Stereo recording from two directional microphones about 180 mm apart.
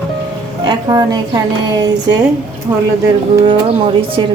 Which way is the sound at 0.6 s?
20° right (ahead or behind).